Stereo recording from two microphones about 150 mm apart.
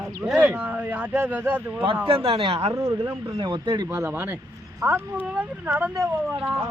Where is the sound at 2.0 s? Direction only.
40° right (ahead or behind).